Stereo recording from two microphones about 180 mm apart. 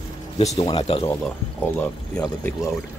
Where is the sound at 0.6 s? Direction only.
30° left (ahead or behind).